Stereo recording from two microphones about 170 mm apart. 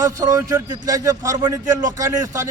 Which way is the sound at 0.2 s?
20° right (ahead or behind).